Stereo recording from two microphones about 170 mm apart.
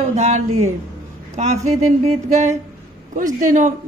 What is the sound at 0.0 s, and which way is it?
A woman's voice, 40° right (ahead or behind).